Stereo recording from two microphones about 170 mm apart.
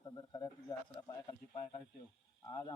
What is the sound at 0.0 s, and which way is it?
Speech, 20° left (ahead or behind).